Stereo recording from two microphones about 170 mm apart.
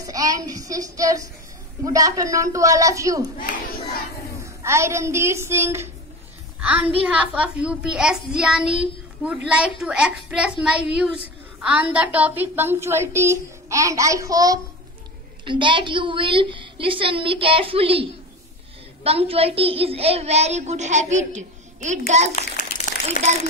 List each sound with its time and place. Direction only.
0.0 s a man's voice: 20° right (ahead or behind)
4.6 s a woman's voice: 15° right (ahead or behind); by 18.0 s 35° right (ahead or behind)
19.0 s a child's voice: 35° right (ahead or behind)
22.3 s a sound: 45° left (ahead or behind)